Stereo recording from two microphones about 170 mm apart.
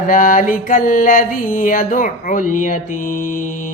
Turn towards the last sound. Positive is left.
turn(degrees=50)  # may be behind; listen again after turning